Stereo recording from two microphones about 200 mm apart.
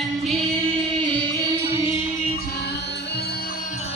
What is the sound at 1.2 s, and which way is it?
Music, 20° right (ahead or behind).